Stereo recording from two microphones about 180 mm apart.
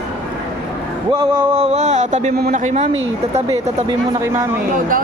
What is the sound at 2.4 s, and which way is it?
Speech, 50° right (ahead or behind).